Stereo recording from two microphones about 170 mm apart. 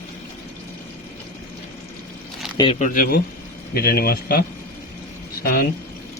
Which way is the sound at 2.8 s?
50° left (ahead or behind).